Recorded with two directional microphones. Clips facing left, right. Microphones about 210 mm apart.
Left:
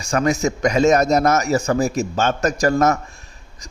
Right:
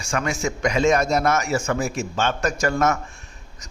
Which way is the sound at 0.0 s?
40° left (ahead or behind).